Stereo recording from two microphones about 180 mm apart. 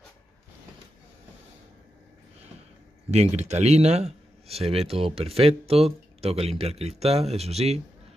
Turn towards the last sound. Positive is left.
turn(degrees=-35)  # may be behind; listen again after turning